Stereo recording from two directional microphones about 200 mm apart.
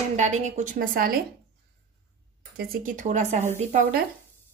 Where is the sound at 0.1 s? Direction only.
35° right (ahead or behind).